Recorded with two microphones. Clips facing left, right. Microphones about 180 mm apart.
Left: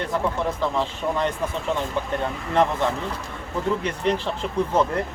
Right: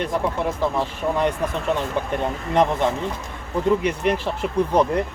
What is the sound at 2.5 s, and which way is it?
Speech, 15° right (ahead or behind).